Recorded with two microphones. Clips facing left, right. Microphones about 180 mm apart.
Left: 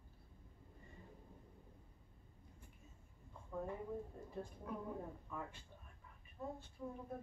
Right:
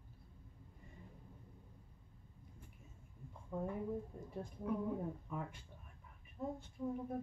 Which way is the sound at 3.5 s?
20° right (ahead or behind).